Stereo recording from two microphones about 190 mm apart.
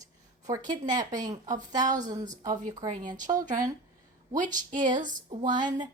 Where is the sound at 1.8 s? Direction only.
40° right (ahead or behind).